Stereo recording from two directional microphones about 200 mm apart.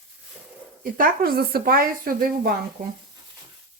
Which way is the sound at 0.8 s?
45° right (ahead or behind).